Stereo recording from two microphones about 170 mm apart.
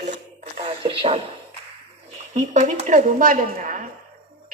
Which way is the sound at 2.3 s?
45° right (ahead or behind).